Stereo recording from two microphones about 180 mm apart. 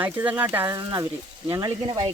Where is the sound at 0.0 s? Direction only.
10° right (ahead or behind).